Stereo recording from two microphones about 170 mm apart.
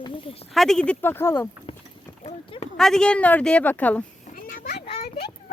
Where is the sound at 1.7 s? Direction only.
30° left (ahead or behind).